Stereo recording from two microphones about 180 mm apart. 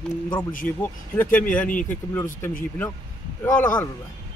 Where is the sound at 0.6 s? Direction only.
10° left (ahead or behind).